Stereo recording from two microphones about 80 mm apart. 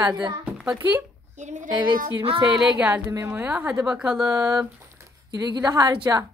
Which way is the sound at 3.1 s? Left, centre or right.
Right.